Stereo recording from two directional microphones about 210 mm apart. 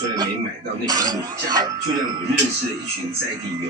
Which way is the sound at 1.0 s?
15° right (ahead or behind).